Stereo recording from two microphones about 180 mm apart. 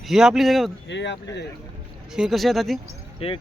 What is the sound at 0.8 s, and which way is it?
Speech, 80° left.